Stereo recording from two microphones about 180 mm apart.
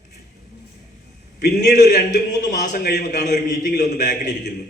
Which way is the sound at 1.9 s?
50° left (ahead or behind).